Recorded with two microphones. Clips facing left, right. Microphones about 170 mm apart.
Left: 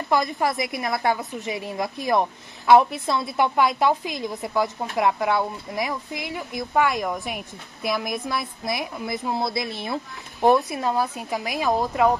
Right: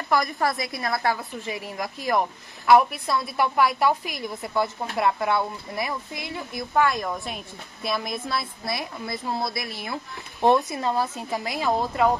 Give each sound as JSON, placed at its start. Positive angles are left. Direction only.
{"t": 0.1, "sound": "a woman's voice", "side_deg": 20}
{"t": 10.7, "sound": "a woman's voice", "side_deg": 10}